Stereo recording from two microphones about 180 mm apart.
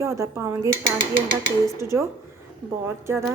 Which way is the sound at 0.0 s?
15° right (ahead or behind).